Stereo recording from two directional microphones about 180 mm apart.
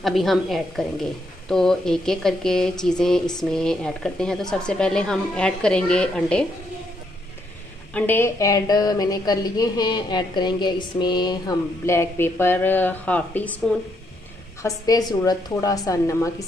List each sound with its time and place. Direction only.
0.0 s speech: centre (ahead or behind)
7.9 s a woman's voice: 10° left (ahead or behind)
14.6 s a woman's voice: 20° left (ahead or behind)